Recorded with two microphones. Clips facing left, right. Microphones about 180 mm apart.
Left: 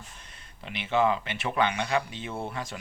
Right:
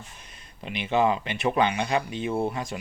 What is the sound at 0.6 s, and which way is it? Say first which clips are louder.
Speech: right 2 dB; 20° right (ahead or behind).